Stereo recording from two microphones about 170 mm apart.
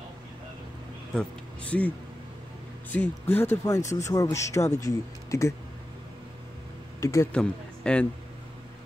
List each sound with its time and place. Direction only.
1.1 s speech: 5° left (ahead or behind)
2.9 s speech: 10° left (ahead or behind)
7.0 s speech: 20° left (ahead or behind)
7.3 s speech: 5° left (ahead or behind)